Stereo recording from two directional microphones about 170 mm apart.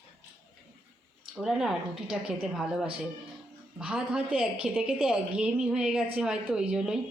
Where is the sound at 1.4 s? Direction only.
5° right (ahead or behind).